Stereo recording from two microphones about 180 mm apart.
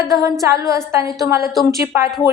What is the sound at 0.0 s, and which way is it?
Humming, 20° right (ahead or behind).